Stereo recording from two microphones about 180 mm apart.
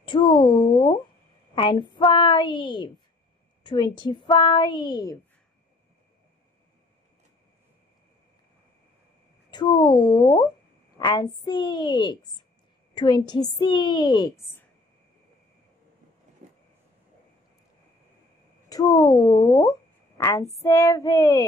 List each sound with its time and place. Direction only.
0.0 s a woman's voice: 25° left (ahead or behind)
9.5 s a woman's voice: 25° left (ahead or behind)
16.4 s vehicle: 40° right (ahead or behind)
18.7 s a woman's voice: 20° left (ahead or behind)